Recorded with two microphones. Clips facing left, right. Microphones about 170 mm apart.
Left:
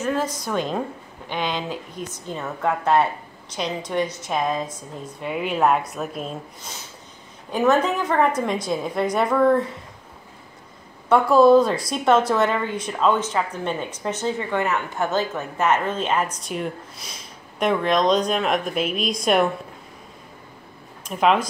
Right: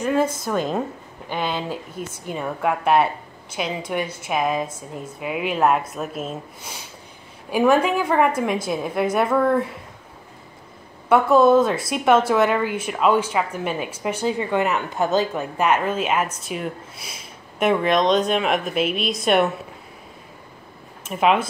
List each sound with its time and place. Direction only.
0.2 s a woman's voice: 50° right (ahead or behind)
0.5 s a woman's voice: 5° right (ahead or behind)
11.1 s a woman's voice: centre (ahead or behind)
21.0 s speech: 5° right (ahead or behind)